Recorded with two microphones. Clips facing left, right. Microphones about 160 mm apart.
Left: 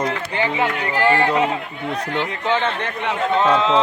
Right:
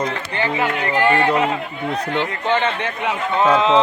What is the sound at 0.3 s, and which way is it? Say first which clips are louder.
Speech: even; 15° left (ahead or behind).